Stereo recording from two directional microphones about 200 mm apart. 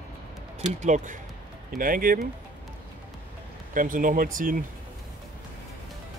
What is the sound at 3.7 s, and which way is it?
Speech, 40° right (ahead or behind).